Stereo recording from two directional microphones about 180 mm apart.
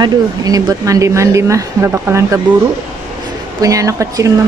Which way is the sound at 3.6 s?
20° right (ahead or behind).